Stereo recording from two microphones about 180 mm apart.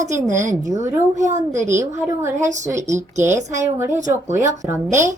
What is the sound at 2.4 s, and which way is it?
Speech, 40° right (ahead or behind).